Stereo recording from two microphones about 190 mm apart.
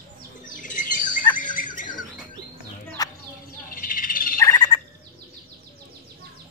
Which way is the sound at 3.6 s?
45° left (ahead or behind).